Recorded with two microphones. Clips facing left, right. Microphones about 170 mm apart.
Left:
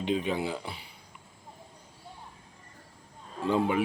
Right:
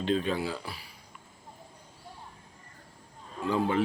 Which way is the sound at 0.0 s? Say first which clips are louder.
Right 1 dB; 15° left (ahead or behind).